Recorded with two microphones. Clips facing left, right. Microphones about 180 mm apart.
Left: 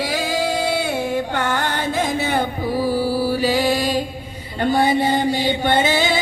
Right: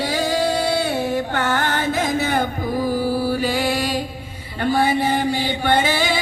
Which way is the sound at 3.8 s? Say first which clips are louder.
Left 2 dB; 10° right (ahead or behind).